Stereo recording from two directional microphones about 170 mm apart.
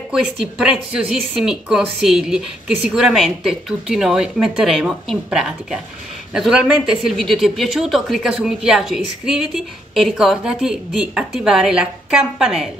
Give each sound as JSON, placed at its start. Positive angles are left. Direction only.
{"t": 0.1, "sound": "a woman's voice", "side_deg": -5}